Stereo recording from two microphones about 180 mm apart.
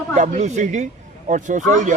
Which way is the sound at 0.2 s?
40° right (ahead or behind).